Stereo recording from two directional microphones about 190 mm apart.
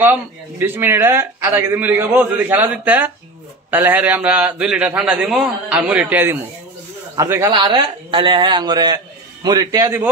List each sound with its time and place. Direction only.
0.0 s a man's voice: 10° right (ahead or behind)
7.5 s a man's voice: 25° right (ahead or behind)